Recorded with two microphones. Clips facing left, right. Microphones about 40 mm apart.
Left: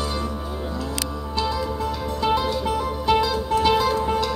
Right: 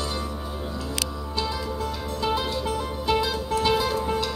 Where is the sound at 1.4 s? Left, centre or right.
Centre.